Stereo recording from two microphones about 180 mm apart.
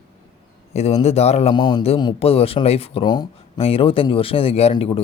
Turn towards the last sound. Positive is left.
turn(degrees=35)  # may be behind; listen again after turning